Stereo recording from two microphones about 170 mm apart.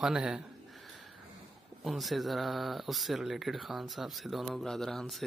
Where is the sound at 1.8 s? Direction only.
Centre (ahead or behind).